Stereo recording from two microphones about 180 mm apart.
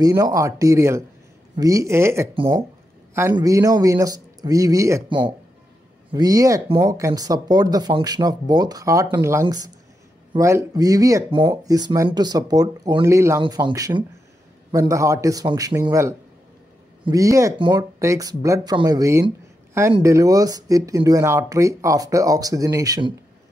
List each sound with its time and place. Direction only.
0.0 s a man's voice: 20° right (ahead or behind)
3.3 s speech: 20° right (ahead or behind)
13.4 s a man's voice: 25° right (ahead or behind)